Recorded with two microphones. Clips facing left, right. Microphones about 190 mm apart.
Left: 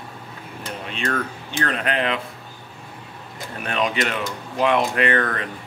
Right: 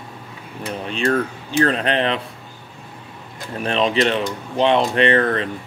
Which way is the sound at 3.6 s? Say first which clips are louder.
Right 5 dB; 30° right (ahead or behind).